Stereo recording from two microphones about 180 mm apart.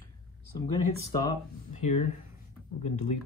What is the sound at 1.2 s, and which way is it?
Speech, 40° left (ahead or behind).